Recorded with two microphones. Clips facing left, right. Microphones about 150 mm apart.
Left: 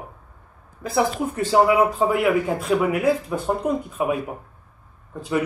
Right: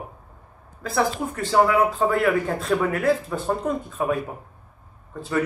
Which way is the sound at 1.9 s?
10° left (ahead or behind).